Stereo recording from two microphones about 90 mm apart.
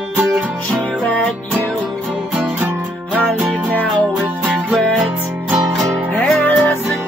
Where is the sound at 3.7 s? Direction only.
15° left (ahead or behind).